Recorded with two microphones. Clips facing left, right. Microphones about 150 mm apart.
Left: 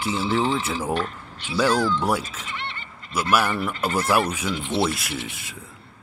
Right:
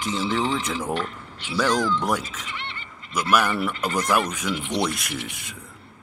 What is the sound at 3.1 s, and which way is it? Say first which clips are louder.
Speech: even; 5° left (ahead or behind).